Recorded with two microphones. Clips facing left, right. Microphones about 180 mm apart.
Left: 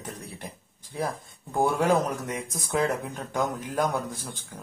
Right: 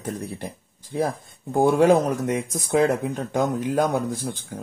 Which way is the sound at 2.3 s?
30° right (ahead or behind).